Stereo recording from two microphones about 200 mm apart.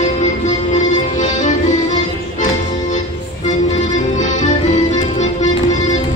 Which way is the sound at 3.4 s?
35° left (ahead or behind).